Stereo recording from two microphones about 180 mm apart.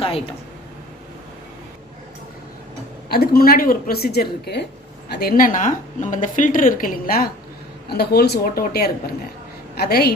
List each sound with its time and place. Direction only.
3.1 s a woman's voice: 60° left (ahead or behind)